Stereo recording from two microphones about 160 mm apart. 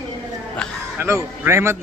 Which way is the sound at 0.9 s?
15° right (ahead or behind).